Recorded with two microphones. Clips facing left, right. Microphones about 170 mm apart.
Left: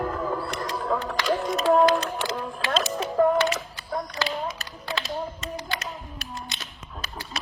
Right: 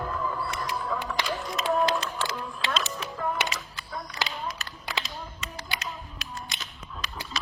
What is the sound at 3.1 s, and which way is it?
Single-lens reflex camera, 45° left (ahead or behind).